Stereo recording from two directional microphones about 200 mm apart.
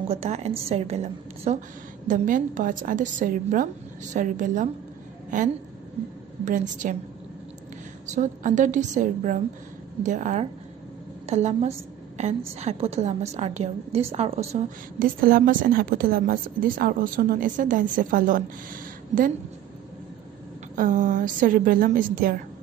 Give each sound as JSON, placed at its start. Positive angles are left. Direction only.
{"t": 0.1, "sound": "a woman's voice", "side_deg": -35}
{"t": 8.1, "sound": "a woman's voice", "side_deg": -40}
{"t": 20.7, "sound": "a woman's voice", "side_deg": -40}